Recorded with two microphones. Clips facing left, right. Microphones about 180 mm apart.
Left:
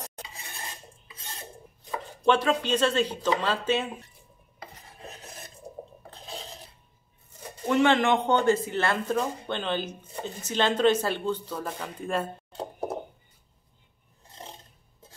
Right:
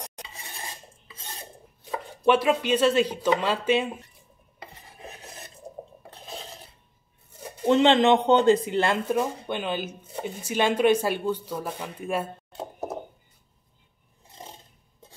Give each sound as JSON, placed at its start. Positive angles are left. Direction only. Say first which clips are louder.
{"t": 2.2, "sound": "speech", "louder": "right 2 dB", "side_deg": -10}
{"t": 7.6, "sound": "a man's voice", "louder": "right 4 dB", "side_deg": -20}